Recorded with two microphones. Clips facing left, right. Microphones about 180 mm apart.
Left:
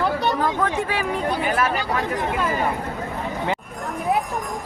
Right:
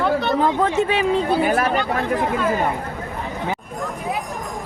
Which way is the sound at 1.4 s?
40° right (ahead or behind).